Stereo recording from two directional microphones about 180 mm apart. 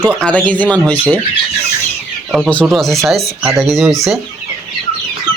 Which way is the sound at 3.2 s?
15° right (ahead or behind).